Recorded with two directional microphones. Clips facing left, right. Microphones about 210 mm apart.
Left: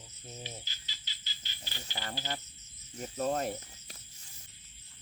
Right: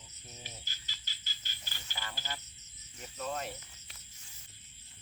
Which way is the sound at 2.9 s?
45° left (ahead or behind).